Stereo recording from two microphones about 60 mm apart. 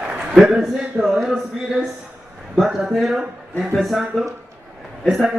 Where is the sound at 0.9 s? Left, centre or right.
Centre.